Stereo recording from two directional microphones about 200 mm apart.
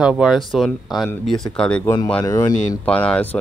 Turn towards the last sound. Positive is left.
turn(degrees=5)  # may be behind; listen again after turning